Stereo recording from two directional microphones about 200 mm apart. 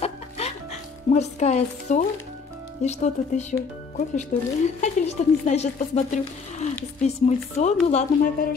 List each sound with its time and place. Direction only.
0.0 s music: 30° left (ahead or behind)
2.8 s speech: 35° left (ahead or behind)